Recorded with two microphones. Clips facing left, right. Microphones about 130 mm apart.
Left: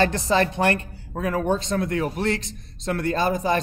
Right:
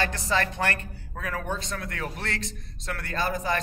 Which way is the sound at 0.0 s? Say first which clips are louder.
Left 7 dB; 25° left (ahead or behind).